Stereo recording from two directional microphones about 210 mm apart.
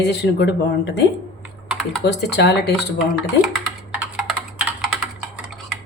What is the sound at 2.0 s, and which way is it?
Speech, 55° left (ahead or behind).